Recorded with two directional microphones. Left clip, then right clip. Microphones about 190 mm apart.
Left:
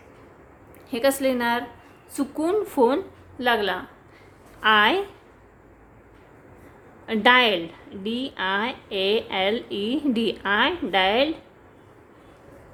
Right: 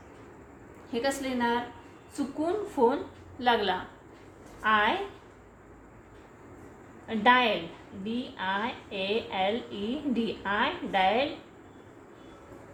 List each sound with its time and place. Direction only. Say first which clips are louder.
0.9 s a woman's voice: left 9 dB; 50° left (ahead or behind)
4.6 s a woman's voice: left 7 dB; 60° left (ahead or behind)
7.1 s a woman's voice: left 5 dB; 65° left (ahead or behind)